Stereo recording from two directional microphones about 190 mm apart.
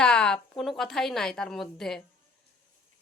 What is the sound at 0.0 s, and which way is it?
A woman's voice, 5° left (ahead or behind).